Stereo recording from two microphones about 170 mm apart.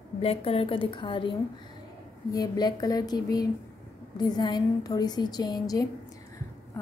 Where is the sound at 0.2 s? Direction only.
35° left (ahead or behind).